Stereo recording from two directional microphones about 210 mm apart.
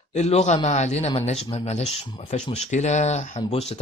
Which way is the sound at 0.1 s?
30° left (ahead or behind).